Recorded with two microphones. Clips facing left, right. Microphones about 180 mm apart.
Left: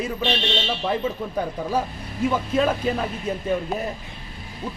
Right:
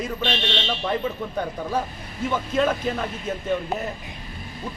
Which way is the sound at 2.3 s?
10° left (ahead or behind).